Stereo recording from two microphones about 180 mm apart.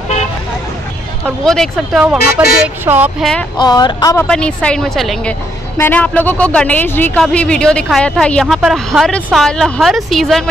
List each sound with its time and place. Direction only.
1.2 s speech: 5° left (ahead or behind)
2.4 s speech: 10° right (ahead or behind)
3.5 s speech: 25° left (ahead or behind)
4.3 s speech: 5° left (ahead or behind)